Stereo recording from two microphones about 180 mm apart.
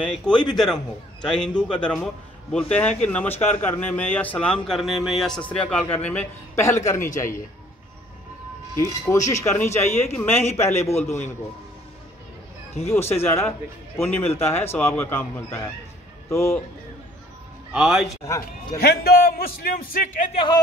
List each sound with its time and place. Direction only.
0.0 s speech: 5° left (ahead or behind)
8.7 s speech: 15° left (ahead or behind)
12.8 s a man's voice: 15° left (ahead or behind)
17.7 s speech: centre (ahead or behind)
18.0 s speech: 15° left (ahead or behind)
18.8 s a man's voice: 60° left (ahead or behind)